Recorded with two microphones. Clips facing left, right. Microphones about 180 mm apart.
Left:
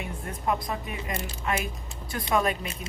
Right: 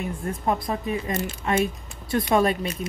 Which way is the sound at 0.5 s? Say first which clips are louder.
Right 4 dB; 30° right (ahead or behind).